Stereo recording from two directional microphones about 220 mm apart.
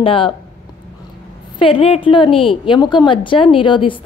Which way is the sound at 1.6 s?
25° left (ahead or behind).